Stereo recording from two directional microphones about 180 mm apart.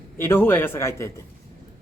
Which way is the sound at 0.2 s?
10° left (ahead or behind).